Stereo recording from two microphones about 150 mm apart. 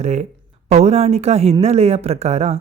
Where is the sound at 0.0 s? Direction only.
50° right (ahead or behind).